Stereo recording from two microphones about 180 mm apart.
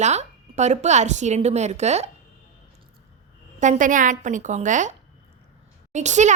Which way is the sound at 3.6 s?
45° right (ahead or behind).